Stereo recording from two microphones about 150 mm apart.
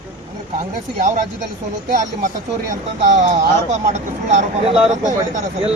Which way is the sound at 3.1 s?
50° right (ahead or behind).